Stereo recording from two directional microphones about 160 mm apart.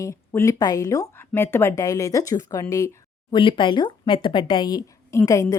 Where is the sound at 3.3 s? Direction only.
30° left (ahead or behind).